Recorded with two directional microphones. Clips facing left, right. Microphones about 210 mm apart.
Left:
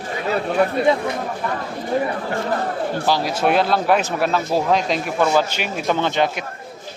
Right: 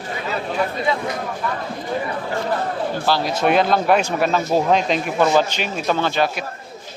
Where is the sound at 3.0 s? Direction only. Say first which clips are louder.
Even; 10° left (ahead or behind).